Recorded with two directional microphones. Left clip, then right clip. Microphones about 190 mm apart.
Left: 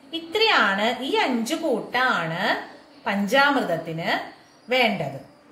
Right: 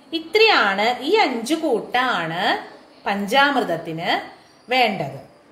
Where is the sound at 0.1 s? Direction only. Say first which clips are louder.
Right 5 dB; 40° right (ahead or behind).